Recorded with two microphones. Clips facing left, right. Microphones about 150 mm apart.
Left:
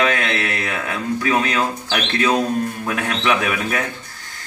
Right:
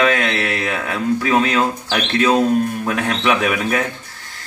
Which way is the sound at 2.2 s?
15° right (ahead or behind).